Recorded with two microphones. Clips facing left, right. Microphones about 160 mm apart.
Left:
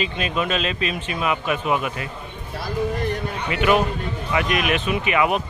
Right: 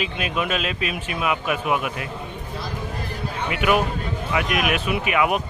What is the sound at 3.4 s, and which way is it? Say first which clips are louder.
Speech: left 2 dB; 5° right (ahead or behind).